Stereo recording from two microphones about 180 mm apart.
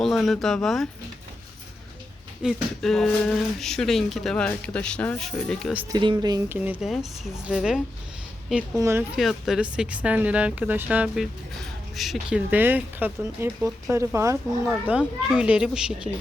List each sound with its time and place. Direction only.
0.0 s speech: centre (ahead or behind)
2.4 s speech: centre (ahead or behind)
5.9 s speech: 25° right (ahead or behind)
6.7 s speech: centre (ahead or behind)
8.8 s speech: 15° right (ahead or behind)
9.1 s speech: 5° right (ahead or behind)